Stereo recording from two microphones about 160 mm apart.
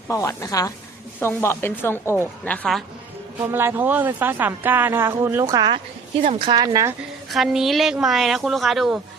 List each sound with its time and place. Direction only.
0.1 s a woman's voice: 20° left (ahead or behind)
3.4 s speech: 15° right (ahead or behind)
7.3 s speech: centre (ahead or behind)